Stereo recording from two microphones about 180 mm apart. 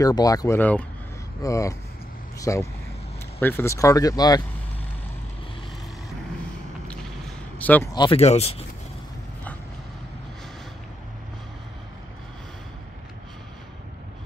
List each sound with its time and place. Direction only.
0.0 s speech: 20° left (ahead or behind)
6.9 s a sound: 5° left (ahead or behind)
7.9 s speech: 25° left (ahead or behind)
8.2 s speech: 35° left (ahead or behind)